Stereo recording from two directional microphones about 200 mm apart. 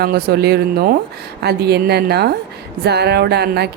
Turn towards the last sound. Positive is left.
turn(degrees=-55)  # may be behind; listen again after turning